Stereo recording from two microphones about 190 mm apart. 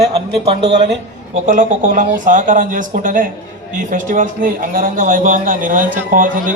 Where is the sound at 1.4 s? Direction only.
45° right (ahead or behind).